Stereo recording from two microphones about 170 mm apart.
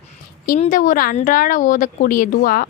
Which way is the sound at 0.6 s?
50° left (ahead or behind).